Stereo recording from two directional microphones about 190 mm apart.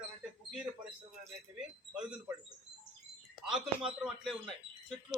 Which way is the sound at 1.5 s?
5° right (ahead or behind).